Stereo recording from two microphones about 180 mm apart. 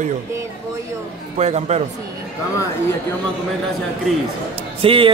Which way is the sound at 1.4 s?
35° right (ahead or behind).